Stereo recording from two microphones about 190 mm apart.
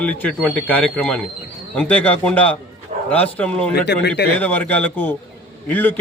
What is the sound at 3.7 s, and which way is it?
Speech, 60° left (ahead or behind).